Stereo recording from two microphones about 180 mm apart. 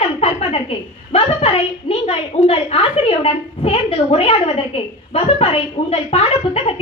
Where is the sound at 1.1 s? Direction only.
35° left (ahead or behind).